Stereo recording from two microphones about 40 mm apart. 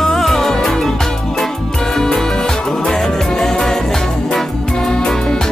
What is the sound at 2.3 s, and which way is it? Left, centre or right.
Music, centre.